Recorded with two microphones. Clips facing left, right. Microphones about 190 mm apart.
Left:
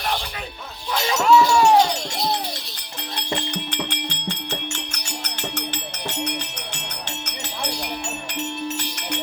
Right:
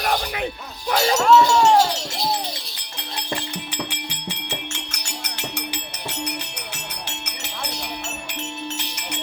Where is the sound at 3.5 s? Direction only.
5° right (ahead or behind).